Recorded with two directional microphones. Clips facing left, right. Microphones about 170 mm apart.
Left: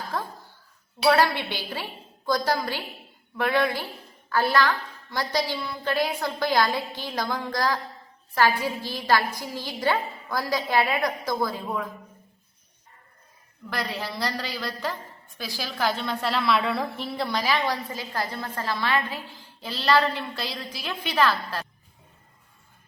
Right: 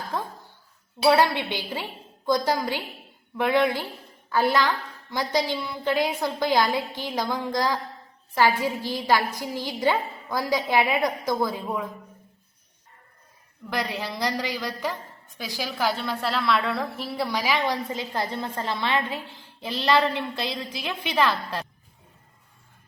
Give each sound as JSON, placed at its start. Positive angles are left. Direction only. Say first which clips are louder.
{"t": 0.1, "sound": "a woman's voice", "louder": "right 1 dB", "side_deg": -15}
{"t": 13.7, "sound": "a woman's voice", "louder": "right 2 dB", "side_deg": -15}